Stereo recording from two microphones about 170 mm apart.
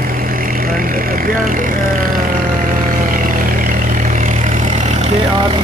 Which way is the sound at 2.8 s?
55° right (ahead or behind).